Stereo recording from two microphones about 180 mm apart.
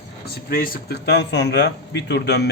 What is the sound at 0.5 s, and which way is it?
Speech, 55° left (ahead or behind).